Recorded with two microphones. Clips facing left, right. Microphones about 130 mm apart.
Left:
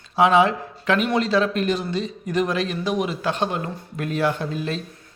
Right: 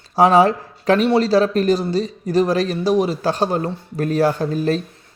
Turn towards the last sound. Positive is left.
turn(degrees=-40)  # may be behind; listen again after turning